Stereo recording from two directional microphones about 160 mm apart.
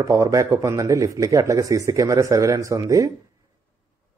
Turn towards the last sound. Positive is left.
turn(degrees=-20)  # may be behind; listen again after turning